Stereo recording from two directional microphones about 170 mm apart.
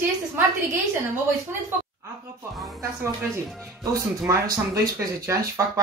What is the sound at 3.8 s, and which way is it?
Speech, 20° right (ahead or behind).